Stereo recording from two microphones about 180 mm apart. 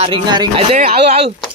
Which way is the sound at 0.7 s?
35° right (ahead or behind).